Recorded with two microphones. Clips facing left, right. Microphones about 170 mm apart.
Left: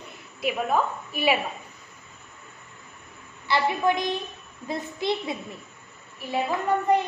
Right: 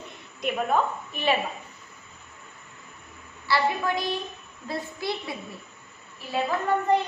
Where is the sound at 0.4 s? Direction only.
5° left (ahead or behind).